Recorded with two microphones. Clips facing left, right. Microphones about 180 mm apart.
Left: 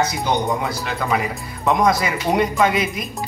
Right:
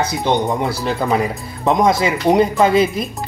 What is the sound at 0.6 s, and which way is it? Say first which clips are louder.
Speech: right 4 dB; 30° right (ahead or behind).